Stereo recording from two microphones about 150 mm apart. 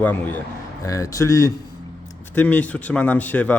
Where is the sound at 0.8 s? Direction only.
20° left (ahead or behind).